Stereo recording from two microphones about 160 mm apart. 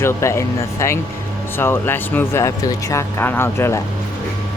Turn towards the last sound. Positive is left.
turn(degrees=15)  # may be behind; listen again after turning